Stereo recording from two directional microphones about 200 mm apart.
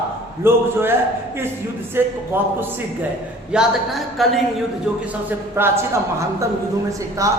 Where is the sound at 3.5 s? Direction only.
Centre (ahead or behind).